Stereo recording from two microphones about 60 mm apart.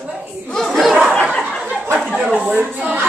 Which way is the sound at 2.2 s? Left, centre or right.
Right.